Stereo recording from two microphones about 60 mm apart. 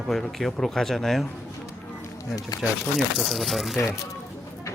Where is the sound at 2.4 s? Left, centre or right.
Left.